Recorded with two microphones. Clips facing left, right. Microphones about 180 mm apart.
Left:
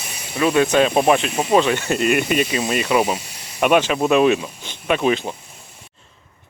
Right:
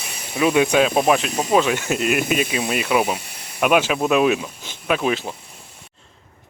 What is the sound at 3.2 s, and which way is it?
Snake, 55° right (ahead or behind).